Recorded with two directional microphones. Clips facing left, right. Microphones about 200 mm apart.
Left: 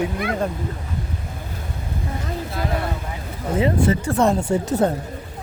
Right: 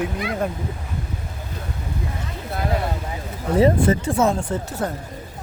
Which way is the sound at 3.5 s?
40° right (ahead or behind).